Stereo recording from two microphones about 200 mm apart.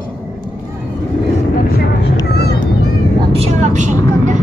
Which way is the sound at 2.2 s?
55° left (ahead or behind).